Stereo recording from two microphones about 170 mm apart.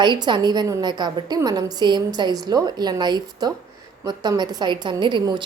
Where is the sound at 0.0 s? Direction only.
25° right (ahead or behind).